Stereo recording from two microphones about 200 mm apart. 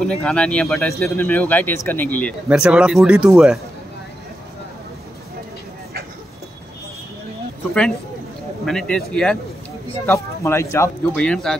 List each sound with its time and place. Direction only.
0.0 s speech: 5° left (ahead or behind)
2.6 s speech: 5° right (ahead or behind)
8.6 s speech: 5° left (ahead or behind)